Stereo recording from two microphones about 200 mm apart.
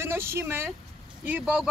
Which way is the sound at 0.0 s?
10° right (ahead or behind).